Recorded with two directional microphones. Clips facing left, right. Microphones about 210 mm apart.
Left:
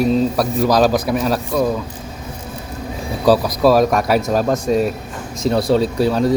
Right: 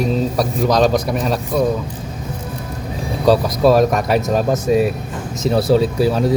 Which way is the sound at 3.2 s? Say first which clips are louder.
Even; centre (ahead or behind).